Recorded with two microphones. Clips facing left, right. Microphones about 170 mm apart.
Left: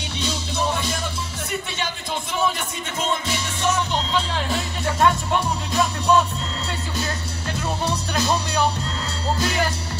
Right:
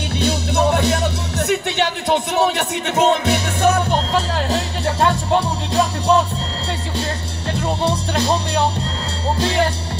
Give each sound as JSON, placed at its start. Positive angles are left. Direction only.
{"t": 0.2, "sound": "music", "side_deg": -65}
{"t": 7.5, "sound": "music", "side_deg": -30}